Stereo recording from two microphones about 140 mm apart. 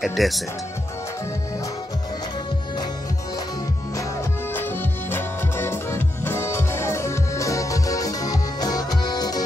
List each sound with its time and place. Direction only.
0.0 s speech: centre (ahead or behind)
4.6 s music: 15° left (ahead or behind)